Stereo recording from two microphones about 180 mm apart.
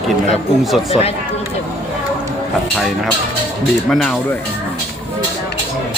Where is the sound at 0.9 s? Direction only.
35° left (ahead or behind).